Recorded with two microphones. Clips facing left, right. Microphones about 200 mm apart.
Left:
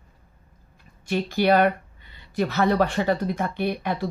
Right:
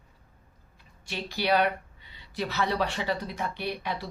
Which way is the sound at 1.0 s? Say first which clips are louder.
Left 8 dB; 50° left (ahead or behind).